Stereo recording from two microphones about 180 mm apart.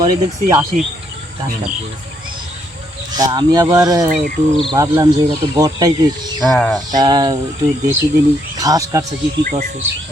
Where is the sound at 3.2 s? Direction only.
20° right (ahead or behind).